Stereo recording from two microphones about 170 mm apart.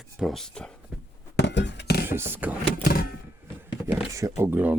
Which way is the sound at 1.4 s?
90° left.